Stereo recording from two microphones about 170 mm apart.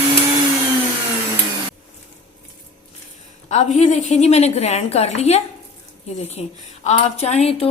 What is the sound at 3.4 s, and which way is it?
A woman's voice, 45° left (ahead or behind).